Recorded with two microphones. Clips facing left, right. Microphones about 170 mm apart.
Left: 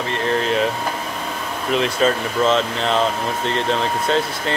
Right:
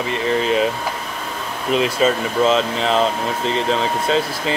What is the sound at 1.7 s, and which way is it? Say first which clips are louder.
Speech: right 1 dB; 5° right (ahead or behind).